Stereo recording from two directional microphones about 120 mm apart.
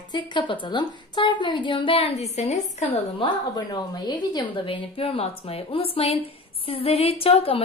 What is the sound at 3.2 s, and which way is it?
A woman's voice, 35° left (ahead or behind).